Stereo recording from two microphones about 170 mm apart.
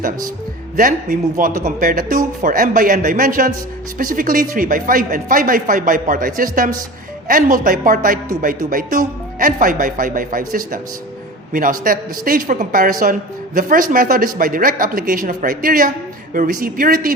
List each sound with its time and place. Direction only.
1.1 s speech: 55° right (ahead or behind)